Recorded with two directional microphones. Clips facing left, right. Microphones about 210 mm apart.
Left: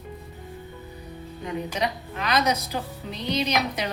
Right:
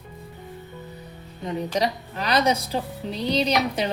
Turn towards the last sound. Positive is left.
turn(degrees=-30)  # may be behind; listen again after turning